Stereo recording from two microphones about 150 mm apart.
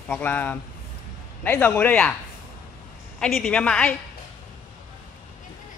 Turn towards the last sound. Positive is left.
turn(degrees=5)  # may be behind; listen again after turning